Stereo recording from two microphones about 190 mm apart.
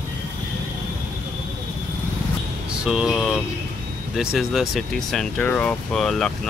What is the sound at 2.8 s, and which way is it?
Speech, 5° right (ahead or behind).